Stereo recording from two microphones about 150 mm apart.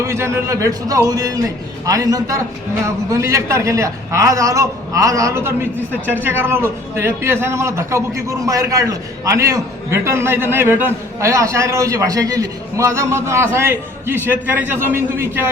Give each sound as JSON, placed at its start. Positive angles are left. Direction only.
{"t": 0.0, "sound": "a man's voice", "side_deg": -20}